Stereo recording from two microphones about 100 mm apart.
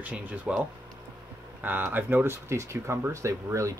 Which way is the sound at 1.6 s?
20° right (ahead or behind).